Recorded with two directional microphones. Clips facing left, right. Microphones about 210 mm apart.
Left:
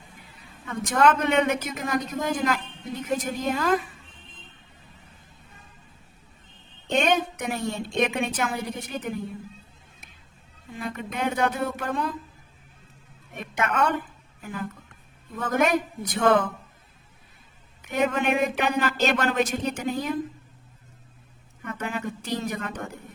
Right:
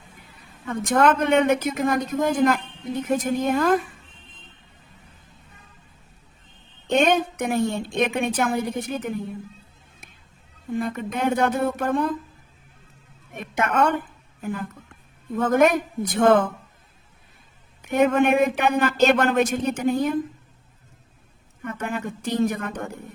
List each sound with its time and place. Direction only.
0.7 s a woman's voice: 50° right (ahead or behind)
6.8 s a woman's voice: 55° right (ahead or behind)
10.7 s a woman's voice: 50° right (ahead or behind)
13.3 s a woman's voice: 50° right (ahead or behind)
17.8 s a woman's voice: 50° right (ahead or behind)
21.6 s a woman's voice: 50° right (ahead or behind)